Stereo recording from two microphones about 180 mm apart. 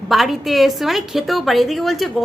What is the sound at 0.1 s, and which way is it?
Speech, centre (ahead or behind).